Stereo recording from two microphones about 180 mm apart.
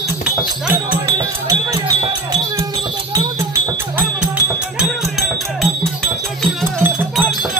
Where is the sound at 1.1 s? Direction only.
20° right (ahead or behind).